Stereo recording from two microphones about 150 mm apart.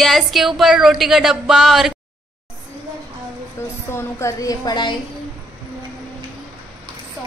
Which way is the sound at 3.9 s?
20° left (ahead or behind).